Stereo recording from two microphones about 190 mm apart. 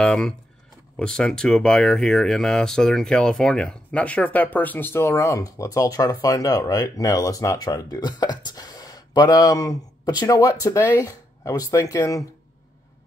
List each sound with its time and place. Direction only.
0.0 s speech: 5° left (ahead or behind)